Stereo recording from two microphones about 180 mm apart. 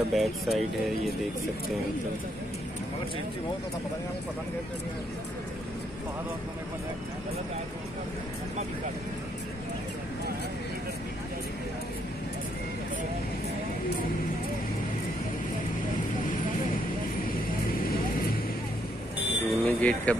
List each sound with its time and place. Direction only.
0.1 s speech: centre (ahead or behind)
19.5 s smoke detector: 5° left (ahead or behind)